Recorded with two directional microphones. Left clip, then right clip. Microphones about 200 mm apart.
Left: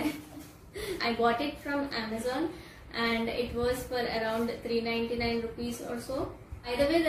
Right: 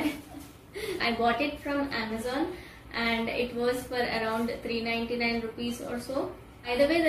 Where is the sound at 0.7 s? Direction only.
Centre (ahead or behind).